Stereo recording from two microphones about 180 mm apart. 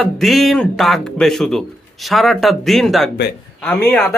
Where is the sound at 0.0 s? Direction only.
Centre (ahead or behind).